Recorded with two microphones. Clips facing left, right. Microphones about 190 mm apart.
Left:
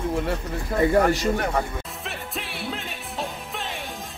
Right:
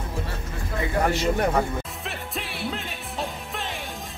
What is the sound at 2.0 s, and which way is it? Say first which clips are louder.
Music: even; centre (ahead or behind).